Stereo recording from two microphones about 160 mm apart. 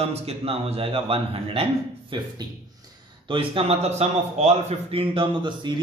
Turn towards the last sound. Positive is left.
turn(degrees=-30)  # may be behind; listen again after turning